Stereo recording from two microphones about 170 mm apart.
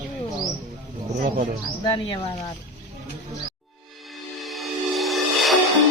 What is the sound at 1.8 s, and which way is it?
Speech, 30° left (ahead or behind).